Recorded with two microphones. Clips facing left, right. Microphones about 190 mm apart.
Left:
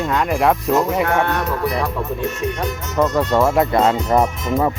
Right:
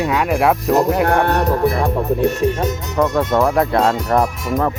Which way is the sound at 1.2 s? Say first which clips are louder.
Right 5 dB; 35° right (ahead or behind).